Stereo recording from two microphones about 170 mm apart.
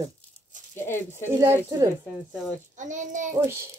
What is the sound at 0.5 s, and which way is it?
Crumpling, 50° right (ahead or behind).